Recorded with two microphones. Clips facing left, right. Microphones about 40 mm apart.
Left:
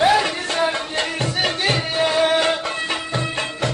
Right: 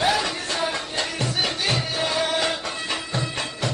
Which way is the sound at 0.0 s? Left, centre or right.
Left.